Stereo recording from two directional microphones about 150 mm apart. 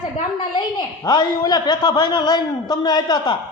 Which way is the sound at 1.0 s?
25° left (ahead or behind).